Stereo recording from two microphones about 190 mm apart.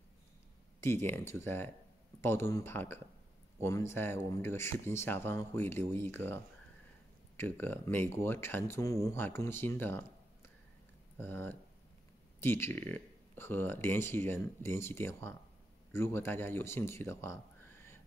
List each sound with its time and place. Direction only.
0.8 s speech: 10° left (ahead or behind)